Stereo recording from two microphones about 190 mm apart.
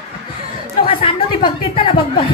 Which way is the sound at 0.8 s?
30° left (ahead or behind).